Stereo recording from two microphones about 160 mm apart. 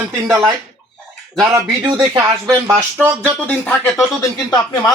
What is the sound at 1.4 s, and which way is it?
Speech, 20° right (ahead or behind).